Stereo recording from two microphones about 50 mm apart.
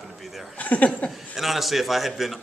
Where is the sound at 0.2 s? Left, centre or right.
Centre.